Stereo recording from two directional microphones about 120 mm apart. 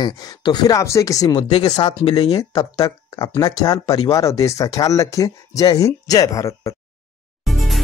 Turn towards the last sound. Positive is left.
turn(degrees=0)  # may be behind; listen again after turning